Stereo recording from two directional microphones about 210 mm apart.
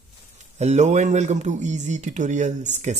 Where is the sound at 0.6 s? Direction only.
35° right (ahead or behind).